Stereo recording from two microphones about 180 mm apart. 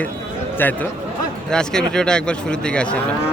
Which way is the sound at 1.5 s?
5° left (ahead or behind).